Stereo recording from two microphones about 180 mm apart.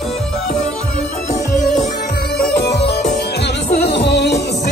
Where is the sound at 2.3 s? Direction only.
60° left (ahead or behind).